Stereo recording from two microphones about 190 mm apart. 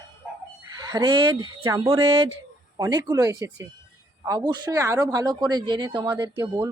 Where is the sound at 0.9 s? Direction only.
20° right (ahead or behind).